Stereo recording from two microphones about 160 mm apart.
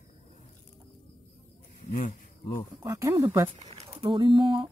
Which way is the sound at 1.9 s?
50° left (ahead or behind).